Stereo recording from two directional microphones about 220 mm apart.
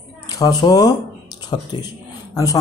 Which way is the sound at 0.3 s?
15° left (ahead or behind).